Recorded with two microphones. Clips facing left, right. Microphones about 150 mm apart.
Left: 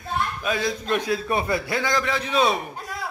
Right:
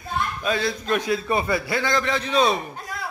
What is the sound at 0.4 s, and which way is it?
Speech, 10° left (ahead or behind).